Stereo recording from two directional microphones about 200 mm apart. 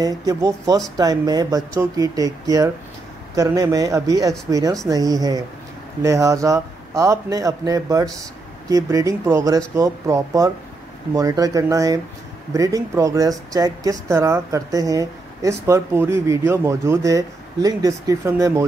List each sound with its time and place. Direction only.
0.0 s speech: 15° right (ahead or behind)